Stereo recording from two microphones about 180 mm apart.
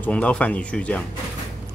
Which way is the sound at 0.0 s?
5° left (ahead or behind).